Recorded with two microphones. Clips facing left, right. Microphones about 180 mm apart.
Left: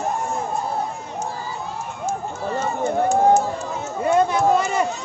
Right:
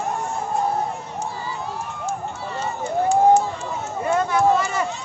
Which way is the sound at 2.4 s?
45° left (ahead or behind).